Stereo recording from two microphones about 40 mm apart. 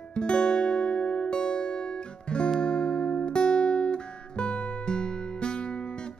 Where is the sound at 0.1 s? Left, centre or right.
Left.